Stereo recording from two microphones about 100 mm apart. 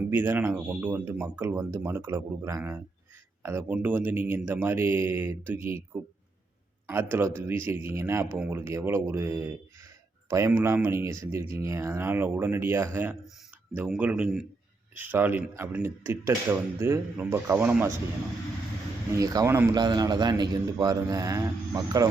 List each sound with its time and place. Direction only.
0.1 s speech: 20° right (ahead or behind)
6.9 s speech: 25° right (ahead or behind)
13.8 s speech: 10° right (ahead or behind)
14.9 s speech: 20° right (ahead or behind)
19.1 s a man's voice: 40° right (ahead or behind)
19.5 s speech: 25° right (ahead or behind)
19.7 s a man's voice: 45° right (ahead or behind)